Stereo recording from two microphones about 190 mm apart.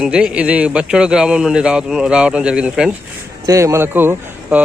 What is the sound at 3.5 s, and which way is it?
A man's voice, 15° right (ahead or behind).